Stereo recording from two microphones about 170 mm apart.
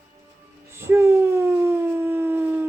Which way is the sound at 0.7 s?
15° right (ahead or behind).